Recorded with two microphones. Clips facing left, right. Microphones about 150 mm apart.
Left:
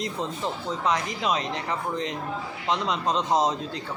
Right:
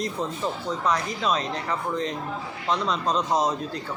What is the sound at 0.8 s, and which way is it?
A man's voice, 20° left (ahead or behind).